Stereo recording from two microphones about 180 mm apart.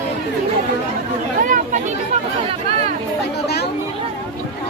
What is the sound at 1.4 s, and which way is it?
Chatter, 45° right (ahead or behind).